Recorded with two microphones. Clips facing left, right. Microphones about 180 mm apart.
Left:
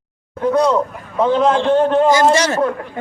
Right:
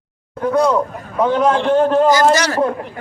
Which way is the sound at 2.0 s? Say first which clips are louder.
Even; 25° left (ahead or behind).